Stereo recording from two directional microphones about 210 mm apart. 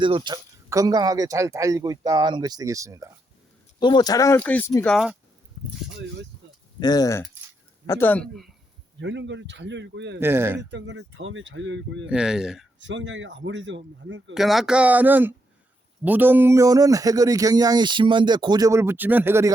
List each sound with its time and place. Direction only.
0.0 s speech: 20° right (ahead or behind)
3.8 s speech: 20° left (ahead or behind)
5.6 s a sound: 30° right (ahead or behind)
6.7 s speech: 20° left (ahead or behind)
9.0 s speech: 60° right (ahead or behind)
10.2 s speech: 10° right (ahead or behind)
10.6 s speech: 60° right (ahead or behind)
12.0 s speech: 5° right (ahead or behind)
12.8 s speech: 60° right (ahead or behind)
14.3 s speech: centre (ahead or behind)